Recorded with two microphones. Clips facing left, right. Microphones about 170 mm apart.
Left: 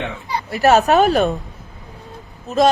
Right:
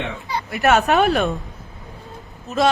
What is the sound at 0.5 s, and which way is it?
Speech, 35° left (ahead or behind).